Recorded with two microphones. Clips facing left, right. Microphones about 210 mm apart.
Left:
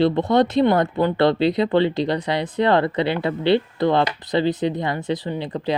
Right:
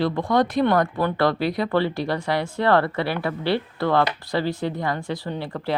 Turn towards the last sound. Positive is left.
turn(degrees=20)  # may be behind; listen again after turning